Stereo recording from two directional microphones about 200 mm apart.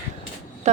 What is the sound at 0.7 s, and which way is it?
Speech, 35° right (ahead or behind).